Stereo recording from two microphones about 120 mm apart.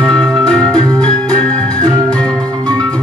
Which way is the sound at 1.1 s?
10° left (ahead or behind).